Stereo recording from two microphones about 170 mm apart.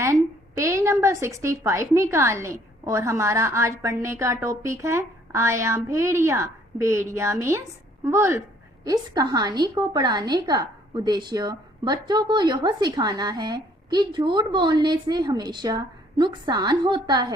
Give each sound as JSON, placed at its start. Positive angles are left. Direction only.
{"t": 0.0, "sound": "a woman's voice", "side_deg": -15}